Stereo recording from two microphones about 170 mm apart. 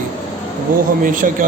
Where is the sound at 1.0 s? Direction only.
50° right (ahead or behind).